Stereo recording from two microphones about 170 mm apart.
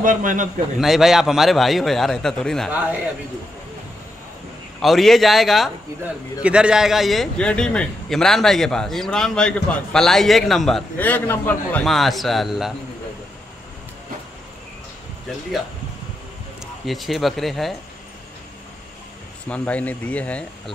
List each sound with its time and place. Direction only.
0.0 s a man's voice: 50° right (ahead or behind)
0.7 s a man's voice: centre (ahead or behind)
2.7 s a man's voice: 10° right (ahead or behind)
4.8 s a man's voice: centre (ahead or behind)
16.8 s a man's voice: centre (ahead or behind)
19.5 s speech: 10° left (ahead or behind)